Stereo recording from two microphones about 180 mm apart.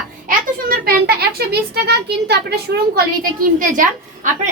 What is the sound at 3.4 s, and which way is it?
Speech, 50° right (ahead or behind).